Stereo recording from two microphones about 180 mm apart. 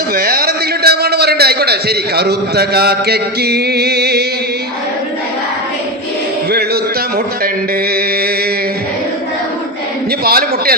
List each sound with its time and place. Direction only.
0.1 s a man's voice: 55° right (ahead or behind)
10.2 s a man's voice: 55° right (ahead or behind)